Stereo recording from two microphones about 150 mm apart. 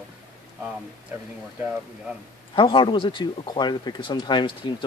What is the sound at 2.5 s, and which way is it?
Speech, 35° left (ahead or behind).